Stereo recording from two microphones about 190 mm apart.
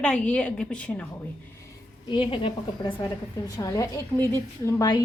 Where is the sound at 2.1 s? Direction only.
25° left (ahead or behind).